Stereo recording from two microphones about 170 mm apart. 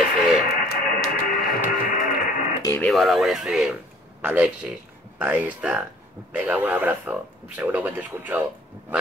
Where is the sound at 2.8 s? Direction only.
Centre (ahead or behind).